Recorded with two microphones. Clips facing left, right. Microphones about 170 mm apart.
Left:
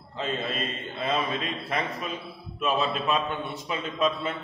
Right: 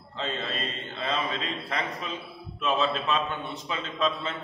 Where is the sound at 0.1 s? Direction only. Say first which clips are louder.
Left 2 dB; 15° left (ahead or behind).